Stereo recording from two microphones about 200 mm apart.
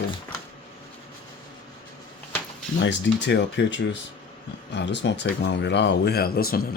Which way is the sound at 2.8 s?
65° left (ahead or behind).